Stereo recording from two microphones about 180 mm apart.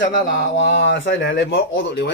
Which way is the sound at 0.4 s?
85° left.